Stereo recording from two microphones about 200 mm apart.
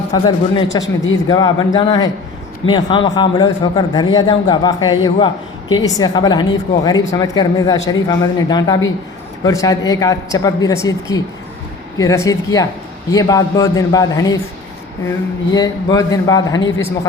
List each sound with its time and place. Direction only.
0.1 s a man's voice: 20° left (ahead or behind)
15.5 s a man's voice: 20° left (ahead or behind)